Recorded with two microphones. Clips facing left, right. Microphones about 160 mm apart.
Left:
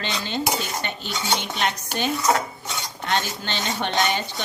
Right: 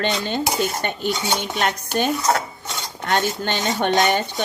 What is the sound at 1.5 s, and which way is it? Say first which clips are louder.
Dishes: right 4 dB; 45° right (ahead or behind).